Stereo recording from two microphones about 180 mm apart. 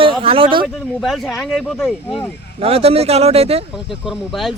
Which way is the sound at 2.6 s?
35° right (ahead or behind).